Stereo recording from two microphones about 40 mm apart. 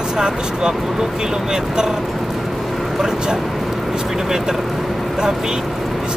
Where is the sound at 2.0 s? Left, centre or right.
Centre.